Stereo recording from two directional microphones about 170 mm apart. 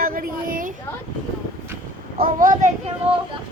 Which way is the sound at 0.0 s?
55° right (ahead or behind).